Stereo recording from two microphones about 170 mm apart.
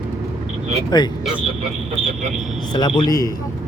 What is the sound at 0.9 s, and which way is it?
Speech, 25° left (ahead or behind).